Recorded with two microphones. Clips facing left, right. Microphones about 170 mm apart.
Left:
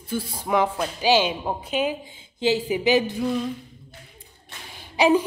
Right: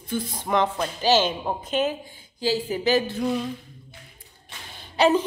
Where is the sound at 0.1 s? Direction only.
10° left (ahead or behind).